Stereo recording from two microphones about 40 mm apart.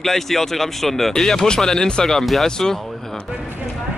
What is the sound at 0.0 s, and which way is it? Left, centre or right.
Speech, centre.